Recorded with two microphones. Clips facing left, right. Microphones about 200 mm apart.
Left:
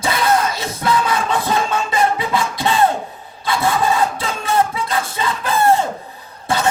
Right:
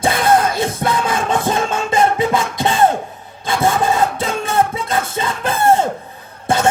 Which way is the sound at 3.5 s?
50° right (ahead or behind).